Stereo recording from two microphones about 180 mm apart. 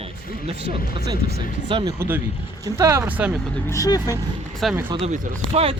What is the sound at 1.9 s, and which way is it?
Speech, 10° right (ahead or behind).